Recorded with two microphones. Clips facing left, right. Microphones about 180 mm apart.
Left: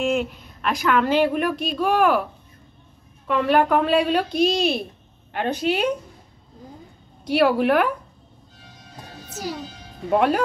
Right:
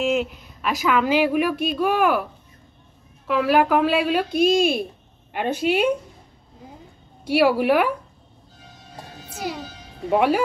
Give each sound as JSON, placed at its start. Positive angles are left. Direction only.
{"t": 0.0, "sound": "a woman's voice", "side_deg": 0}
{"t": 3.3, "sound": "a woman's voice", "side_deg": -5}
{"t": 4.3, "sound": "speech", "side_deg": -50}
{"t": 5.3, "sound": "a woman's voice", "side_deg": -10}
{"t": 7.2, "sound": "a woman's voice", "side_deg": -5}
{"t": 9.3, "sound": "speech", "side_deg": 40}
{"t": 10.1, "sound": "a woman's voice", "side_deg": -5}